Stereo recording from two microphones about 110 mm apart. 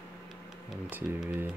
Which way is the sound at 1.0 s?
5° left (ahead or behind).